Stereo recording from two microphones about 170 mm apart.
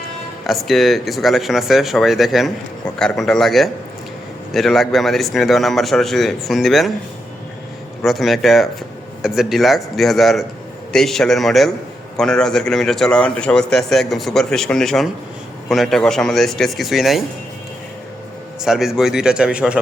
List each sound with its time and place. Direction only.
0.4 s speech: centre (ahead or behind)
8.0 s speech: centre (ahead or behind)
18.6 s speech: centre (ahead or behind)